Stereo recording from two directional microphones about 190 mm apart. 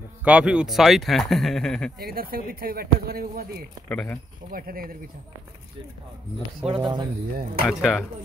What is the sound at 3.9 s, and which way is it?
Speech, 10° left (ahead or behind).